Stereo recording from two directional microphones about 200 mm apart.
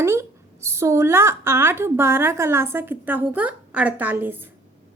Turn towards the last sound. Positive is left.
turn(degrees=-10)  # may be behind; listen again after turning